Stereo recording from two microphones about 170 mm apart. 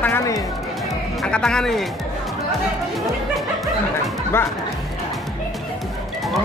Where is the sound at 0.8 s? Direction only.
5° left (ahead or behind).